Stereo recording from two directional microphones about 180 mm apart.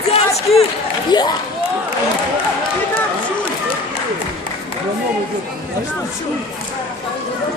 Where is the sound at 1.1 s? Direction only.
25° left (ahead or behind).